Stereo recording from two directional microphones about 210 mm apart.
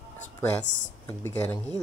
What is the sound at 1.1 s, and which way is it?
Speech, 10° left (ahead or behind).